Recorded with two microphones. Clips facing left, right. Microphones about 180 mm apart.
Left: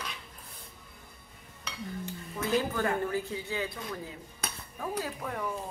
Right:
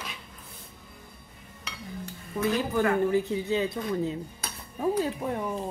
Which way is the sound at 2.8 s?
15° right (ahead or behind).